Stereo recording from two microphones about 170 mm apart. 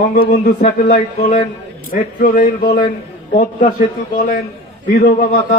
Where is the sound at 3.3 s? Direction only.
50° left (ahead or behind).